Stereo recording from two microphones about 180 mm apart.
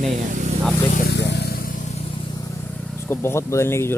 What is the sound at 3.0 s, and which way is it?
Speech, 15° left (ahead or behind).